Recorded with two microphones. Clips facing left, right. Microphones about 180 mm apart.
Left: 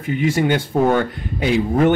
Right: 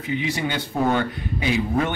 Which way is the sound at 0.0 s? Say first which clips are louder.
Left 6 dB; 50° left (ahead or behind).